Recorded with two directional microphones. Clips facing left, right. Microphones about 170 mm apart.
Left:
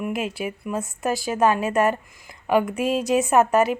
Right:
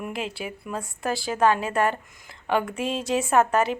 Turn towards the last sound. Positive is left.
turn(degrees=15)  # may be behind; listen again after turning